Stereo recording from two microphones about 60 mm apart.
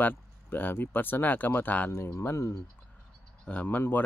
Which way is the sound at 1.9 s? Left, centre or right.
Left.